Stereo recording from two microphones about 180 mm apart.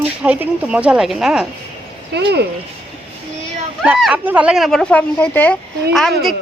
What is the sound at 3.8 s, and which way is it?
A woman's voice, centre (ahead or behind).